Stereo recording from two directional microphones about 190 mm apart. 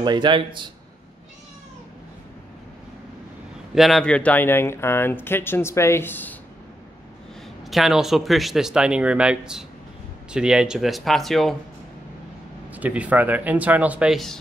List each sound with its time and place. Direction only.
0.0 s speech: 25° right (ahead or behind)
3.7 s speech: centre (ahead or behind)
7.6 s speech: centre (ahead or behind)
12.7 s speech: 5° right (ahead or behind)